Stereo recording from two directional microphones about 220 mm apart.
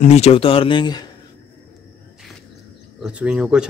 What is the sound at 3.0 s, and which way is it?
Speech, 5° right (ahead or behind).